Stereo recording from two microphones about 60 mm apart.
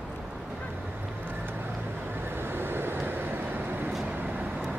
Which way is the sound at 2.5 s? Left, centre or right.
Right.